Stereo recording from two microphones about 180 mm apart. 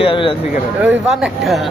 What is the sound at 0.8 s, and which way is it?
Speech, 5° right (ahead or behind).